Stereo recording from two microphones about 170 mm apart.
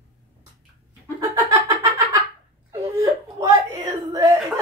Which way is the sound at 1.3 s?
15° right (ahead or behind).